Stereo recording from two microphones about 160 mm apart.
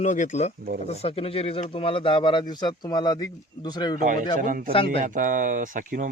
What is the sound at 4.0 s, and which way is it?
Speech, 55° right (ahead or behind).